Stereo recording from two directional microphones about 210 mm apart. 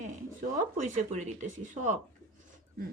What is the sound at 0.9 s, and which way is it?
Speech, 35° right (ahead or behind).